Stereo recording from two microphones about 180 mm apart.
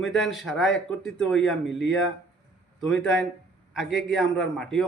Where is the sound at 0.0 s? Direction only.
Centre (ahead or behind).